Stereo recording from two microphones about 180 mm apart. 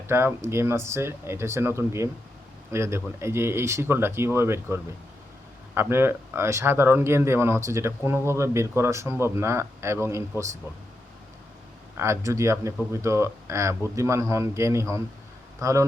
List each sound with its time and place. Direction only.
0.1 s speech: 15° right (ahead or behind)
11.9 s speech: 15° right (ahead or behind)